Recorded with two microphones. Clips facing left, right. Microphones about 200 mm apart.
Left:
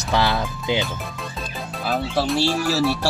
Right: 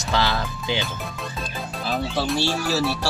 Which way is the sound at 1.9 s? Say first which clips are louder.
Left 3 dB; centre (ahead or behind).